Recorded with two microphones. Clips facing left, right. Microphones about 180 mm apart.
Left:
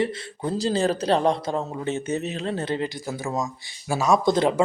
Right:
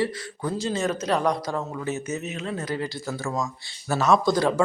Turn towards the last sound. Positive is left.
turn(degrees=20)  # may be behind; listen again after turning